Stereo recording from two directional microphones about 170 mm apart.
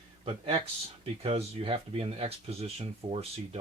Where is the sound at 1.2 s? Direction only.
35° right (ahead or behind).